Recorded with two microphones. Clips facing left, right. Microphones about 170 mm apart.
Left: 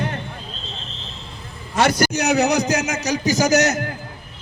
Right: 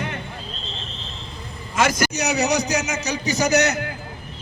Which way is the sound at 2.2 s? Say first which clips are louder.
Left 4 dB; 55° left (ahead or behind).